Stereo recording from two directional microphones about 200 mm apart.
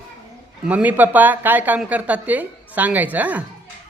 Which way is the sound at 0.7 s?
5° right (ahead or behind).